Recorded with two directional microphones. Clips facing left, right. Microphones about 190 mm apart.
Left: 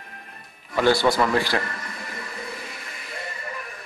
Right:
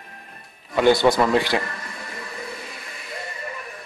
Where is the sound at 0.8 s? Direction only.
20° right (ahead or behind).